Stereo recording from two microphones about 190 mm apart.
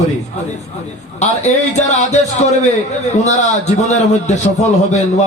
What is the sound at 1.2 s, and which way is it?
Speech, 40° left (ahead or behind).